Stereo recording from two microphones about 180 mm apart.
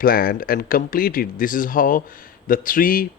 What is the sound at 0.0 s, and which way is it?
Speech, 55° left (ahead or behind).